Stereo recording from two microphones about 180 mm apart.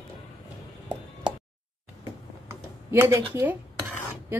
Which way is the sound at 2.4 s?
15° right (ahead or behind).